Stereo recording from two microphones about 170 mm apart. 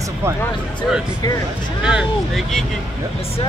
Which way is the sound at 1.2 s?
20° left (ahead or behind).